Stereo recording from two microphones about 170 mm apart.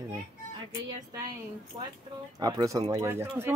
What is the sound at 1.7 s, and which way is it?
Speech, 30° right (ahead or behind).